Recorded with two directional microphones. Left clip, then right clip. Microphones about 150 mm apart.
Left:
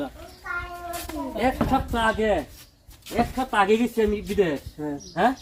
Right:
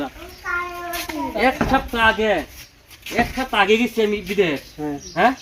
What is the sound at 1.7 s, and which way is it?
Speech, 10° left (ahead or behind).